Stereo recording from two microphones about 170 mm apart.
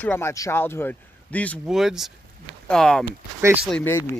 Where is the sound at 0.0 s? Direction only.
15° left (ahead or behind).